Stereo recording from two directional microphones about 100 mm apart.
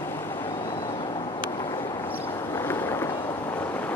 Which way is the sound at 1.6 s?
45° left (ahead or behind).